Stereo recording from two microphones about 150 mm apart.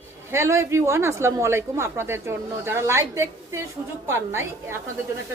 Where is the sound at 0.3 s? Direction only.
20° right (ahead or behind).